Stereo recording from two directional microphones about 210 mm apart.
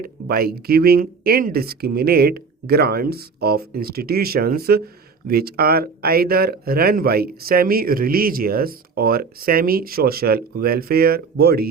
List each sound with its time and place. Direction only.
0.0 s speech: 45° right (ahead or behind)